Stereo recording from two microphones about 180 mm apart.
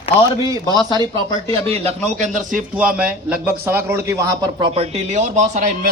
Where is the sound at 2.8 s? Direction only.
5° right (ahead or behind); by 5.7 s 40° right (ahead or behind).